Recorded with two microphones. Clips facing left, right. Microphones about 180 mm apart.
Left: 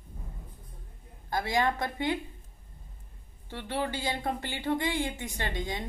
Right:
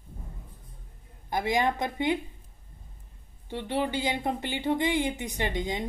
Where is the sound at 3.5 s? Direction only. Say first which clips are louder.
Right 4 dB; 15° right (ahead or behind).